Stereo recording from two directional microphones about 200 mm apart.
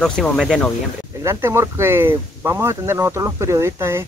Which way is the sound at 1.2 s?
15° right (ahead or behind).